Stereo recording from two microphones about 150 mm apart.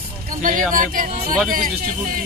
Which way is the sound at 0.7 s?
65° right (ahead or behind).